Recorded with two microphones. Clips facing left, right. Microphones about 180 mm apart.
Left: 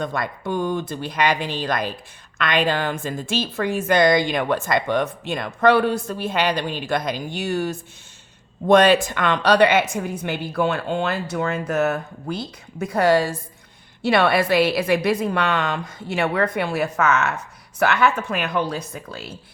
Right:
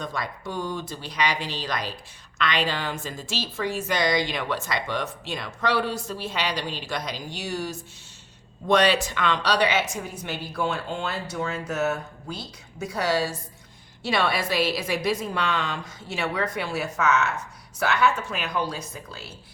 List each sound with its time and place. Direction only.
0.0 s a woman's voice: 55° left (ahead or behind)